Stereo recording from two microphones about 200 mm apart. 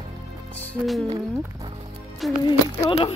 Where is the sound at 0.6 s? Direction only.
Centre (ahead or behind).